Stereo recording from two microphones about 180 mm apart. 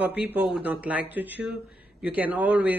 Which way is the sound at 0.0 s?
10° right (ahead or behind).